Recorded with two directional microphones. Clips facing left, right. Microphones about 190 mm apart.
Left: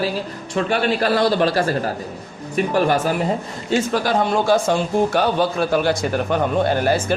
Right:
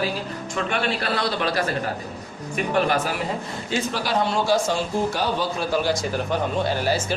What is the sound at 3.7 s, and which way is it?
A man's voice, 50° left (ahead or behind).